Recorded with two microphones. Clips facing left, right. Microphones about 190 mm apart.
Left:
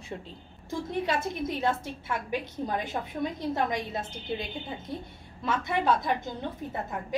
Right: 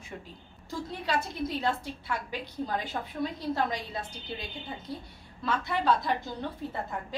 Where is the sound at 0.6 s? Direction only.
20° left (ahead or behind).